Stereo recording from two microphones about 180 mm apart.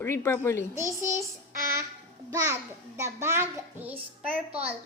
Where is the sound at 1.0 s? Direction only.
45° right (ahead or behind).